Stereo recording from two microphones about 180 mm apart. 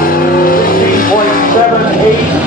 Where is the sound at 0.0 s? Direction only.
55° left (ahead or behind).